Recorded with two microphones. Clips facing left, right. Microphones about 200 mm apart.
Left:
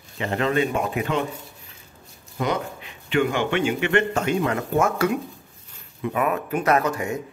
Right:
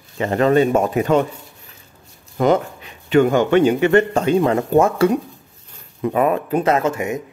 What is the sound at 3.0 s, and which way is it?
Speech, 40° right (ahead or behind).